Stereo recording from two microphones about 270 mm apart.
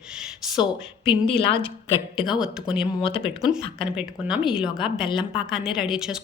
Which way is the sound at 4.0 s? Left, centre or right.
Centre.